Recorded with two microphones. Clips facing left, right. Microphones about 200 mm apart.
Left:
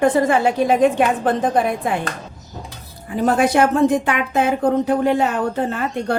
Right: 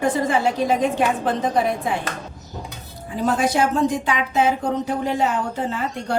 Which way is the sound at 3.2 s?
60° left (ahead or behind).